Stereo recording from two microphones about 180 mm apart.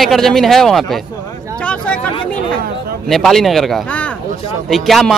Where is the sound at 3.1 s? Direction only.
Centre (ahead or behind).